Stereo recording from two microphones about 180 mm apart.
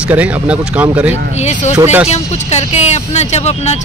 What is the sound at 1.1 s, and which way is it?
Speech, 40° left (ahead or behind).